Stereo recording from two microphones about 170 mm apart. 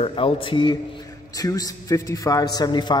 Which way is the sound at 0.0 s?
30° left (ahead or behind).